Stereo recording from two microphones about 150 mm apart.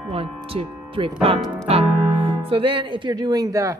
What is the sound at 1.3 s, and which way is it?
Music, centre (ahead or behind).